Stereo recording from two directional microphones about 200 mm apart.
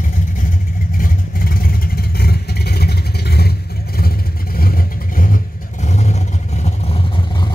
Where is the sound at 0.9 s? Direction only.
45° left (ahead or behind).